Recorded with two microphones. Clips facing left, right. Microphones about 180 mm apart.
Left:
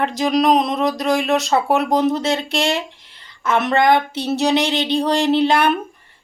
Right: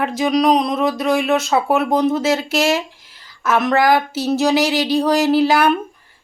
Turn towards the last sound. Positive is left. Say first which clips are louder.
# right 1 dB
turn(degrees=-5)  # may be behind; listen again after turning